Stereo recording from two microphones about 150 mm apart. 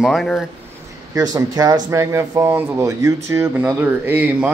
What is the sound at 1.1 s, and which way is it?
Speech, 25° right (ahead or behind).